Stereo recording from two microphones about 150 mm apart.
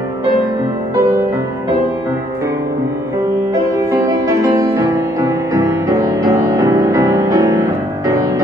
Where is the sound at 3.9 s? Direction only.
20° right (ahead or behind).